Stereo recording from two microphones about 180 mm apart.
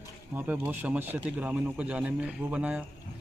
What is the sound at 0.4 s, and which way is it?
A man's voice, 10° right (ahead or behind).